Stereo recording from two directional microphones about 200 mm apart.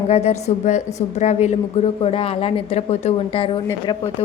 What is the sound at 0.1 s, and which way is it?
A woman's voice, 30° left (ahead or behind).